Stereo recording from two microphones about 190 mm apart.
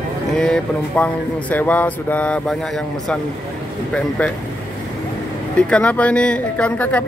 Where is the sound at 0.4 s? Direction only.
5° left (ahead or behind).